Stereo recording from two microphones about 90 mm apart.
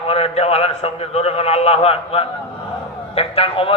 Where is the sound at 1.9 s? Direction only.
90° left.